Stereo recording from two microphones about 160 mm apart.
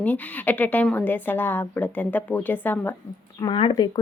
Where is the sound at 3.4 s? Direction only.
30° left (ahead or behind).